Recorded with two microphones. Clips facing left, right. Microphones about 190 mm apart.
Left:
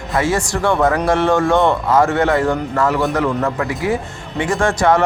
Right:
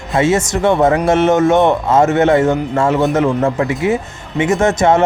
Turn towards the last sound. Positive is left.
turn(degrees=-25)  # may be behind; listen again after turning